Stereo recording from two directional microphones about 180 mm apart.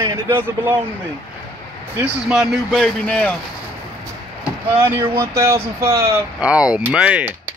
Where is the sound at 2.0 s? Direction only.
5° right (ahead or behind).